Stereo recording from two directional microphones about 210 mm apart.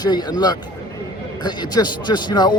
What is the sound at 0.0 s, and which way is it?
A man's voice, 20° left (ahead or behind).